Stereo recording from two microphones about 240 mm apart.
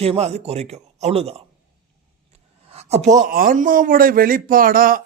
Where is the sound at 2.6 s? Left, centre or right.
Right.